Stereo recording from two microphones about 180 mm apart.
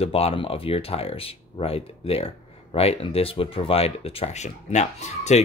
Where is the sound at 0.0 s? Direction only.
35° left (ahead or behind).